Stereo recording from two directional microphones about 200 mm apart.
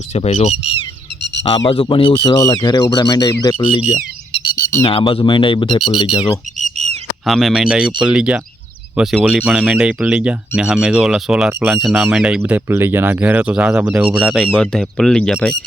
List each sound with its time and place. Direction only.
0.1 s speech: 35° left (ahead or behind)
1.2 s a sound: 65° left (ahead or behind)
1.5 s speech: 25° left (ahead or behind)
3.9 s a sound: 25° left (ahead or behind)
4.8 s speech: 30° left (ahead or behind)
6.7 s bird: 35° right (ahead or behind)
7.3 s speech: centre (ahead or behind)